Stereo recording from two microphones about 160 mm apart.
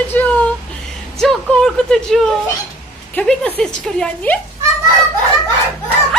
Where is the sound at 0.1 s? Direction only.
10° left (ahead or behind).